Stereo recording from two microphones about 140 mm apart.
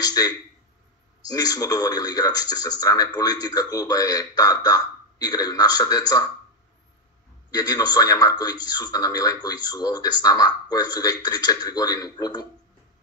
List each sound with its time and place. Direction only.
0.0 s speech: 25° left (ahead or behind)
7.5 s speech: 30° left (ahead or behind)